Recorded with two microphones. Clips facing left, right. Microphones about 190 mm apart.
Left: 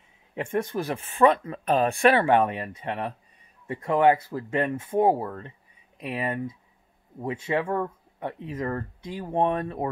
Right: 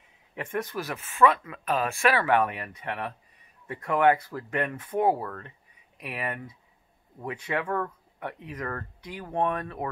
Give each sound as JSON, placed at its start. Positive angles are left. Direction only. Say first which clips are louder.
{"t": 0.3, "sound": "speech", "louder": "left 4 dB", "side_deg": 25}